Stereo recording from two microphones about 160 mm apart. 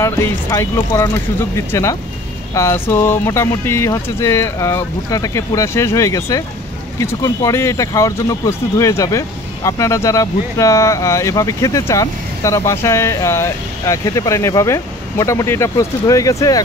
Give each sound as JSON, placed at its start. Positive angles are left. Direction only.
{"t": 0.0, "sound": "speech", "side_deg": 15}